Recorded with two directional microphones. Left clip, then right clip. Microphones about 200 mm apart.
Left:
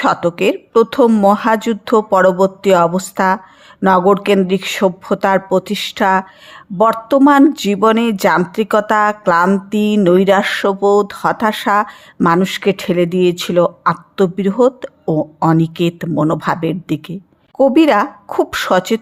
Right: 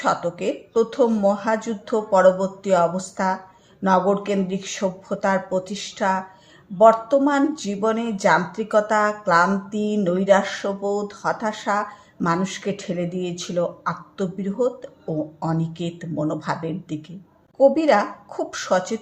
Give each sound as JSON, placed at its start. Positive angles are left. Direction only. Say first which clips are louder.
{"t": 0.0, "sound": "a woman's voice", "louder": "left 8 dB", "side_deg": 45}